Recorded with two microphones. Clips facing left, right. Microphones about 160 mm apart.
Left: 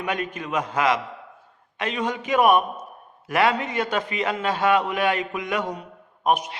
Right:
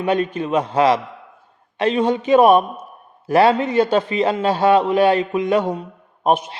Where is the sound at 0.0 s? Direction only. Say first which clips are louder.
Right 8 dB; 30° right (ahead or behind).